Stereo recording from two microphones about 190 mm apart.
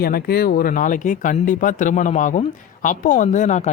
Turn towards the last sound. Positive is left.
turn(degrees=40)  # may be behind; listen again after turning